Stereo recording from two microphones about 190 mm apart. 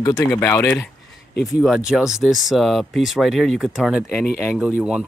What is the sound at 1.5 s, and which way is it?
Speech, 5° right (ahead or behind).